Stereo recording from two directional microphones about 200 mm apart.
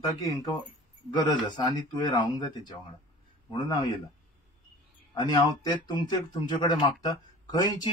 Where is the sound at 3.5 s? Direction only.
25° left (ahead or behind).